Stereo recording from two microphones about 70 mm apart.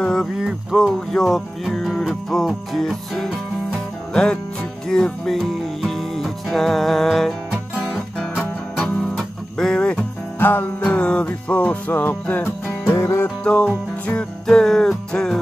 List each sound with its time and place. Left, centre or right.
0.0 s music: centre
0.4 s music: centre
0.9 s music: centre
3.7 s music: centre
8.7 s music: centre
9.8 s music: centre
10.4 s music: left
10.9 s music: centre
12.9 s music: left
13.4 s music: centre